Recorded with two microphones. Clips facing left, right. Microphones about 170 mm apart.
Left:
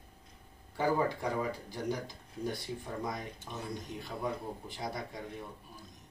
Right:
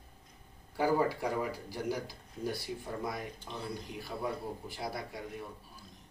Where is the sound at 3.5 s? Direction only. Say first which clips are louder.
Left 2 dB; 20° left (ahead or behind).